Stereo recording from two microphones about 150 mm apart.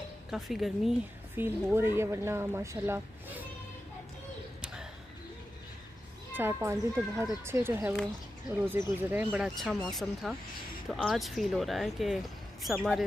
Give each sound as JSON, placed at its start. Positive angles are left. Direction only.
{"t": 0.3, "sound": "speech", "side_deg": 0}
{"t": 1.4, "sound": "speech", "side_deg": -15}
{"t": 6.3, "sound": "speech", "side_deg": -15}
{"t": 9.6, "sound": "speech", "side_deg": 0}